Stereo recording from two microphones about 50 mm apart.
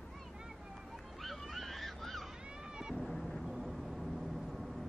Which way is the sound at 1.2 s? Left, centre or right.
Centre.